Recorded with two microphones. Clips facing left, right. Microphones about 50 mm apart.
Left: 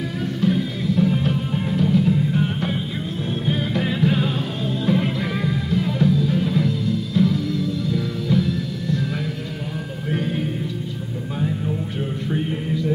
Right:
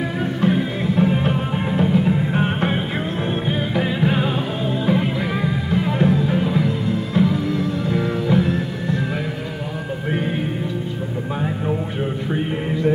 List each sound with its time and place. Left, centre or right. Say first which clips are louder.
0.2 s music: right 1 dB; right
3.4 s music: left 2 dB; centre
5.7 s music: right 2 dB; right
12.3 s music: right 1 dB; right